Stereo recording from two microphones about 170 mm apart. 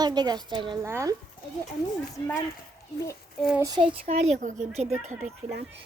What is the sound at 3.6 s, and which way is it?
Speech, 25° right (ahead or behind).